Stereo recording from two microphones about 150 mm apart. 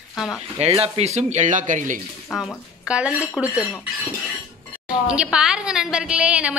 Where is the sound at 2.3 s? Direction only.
5° right (ahead or behind).